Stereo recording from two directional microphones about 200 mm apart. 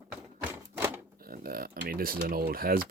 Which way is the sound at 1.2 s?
45° right (ahead or behind).